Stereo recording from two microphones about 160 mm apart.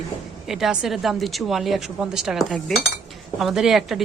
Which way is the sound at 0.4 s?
Centre (ahead or behind).